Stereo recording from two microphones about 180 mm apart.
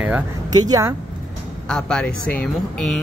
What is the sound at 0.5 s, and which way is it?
Speech, 20° right (ahead or behind).